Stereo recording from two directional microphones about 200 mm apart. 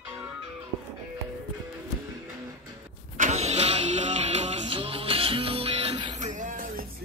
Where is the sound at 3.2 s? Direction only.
35° right (ahead or behind).